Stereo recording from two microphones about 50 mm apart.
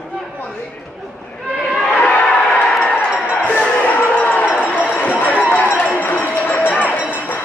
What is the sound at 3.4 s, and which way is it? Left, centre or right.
Music, left.